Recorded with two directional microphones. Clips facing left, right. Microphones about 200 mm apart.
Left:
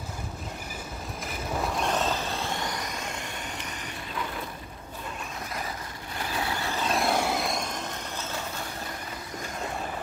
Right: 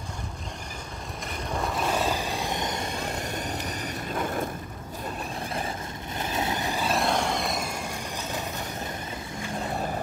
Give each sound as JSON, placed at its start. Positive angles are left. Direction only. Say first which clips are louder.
{"t": 1.5, "sound": "a sound", "louder": "right 1 dB", "side_deg": 0}
{"t": 6.1, "sound": "vehicle", "louder": "right 2 dB", "side_deg": -20}
{"t": 6.9, "sound": "vehicle", "louder": "left 1 dB", "side_deg": 5}